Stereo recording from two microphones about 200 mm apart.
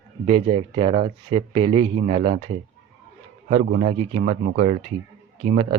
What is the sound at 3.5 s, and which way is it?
Speech, 35° right (ahead or behind).